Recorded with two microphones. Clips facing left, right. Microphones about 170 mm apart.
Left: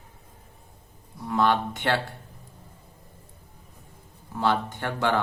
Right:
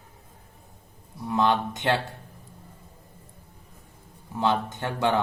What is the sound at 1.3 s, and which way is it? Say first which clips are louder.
Speech: even; 20° right (ahead or behind).